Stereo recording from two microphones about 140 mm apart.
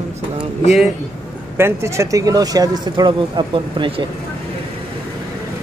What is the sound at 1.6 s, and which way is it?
Speech, 20° right (ahead or behind).